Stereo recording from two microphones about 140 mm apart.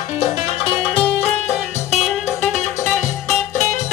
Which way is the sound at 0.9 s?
45° left (ahead or behind).